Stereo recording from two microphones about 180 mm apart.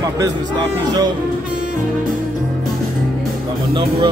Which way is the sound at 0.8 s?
20° right (ahead or behind).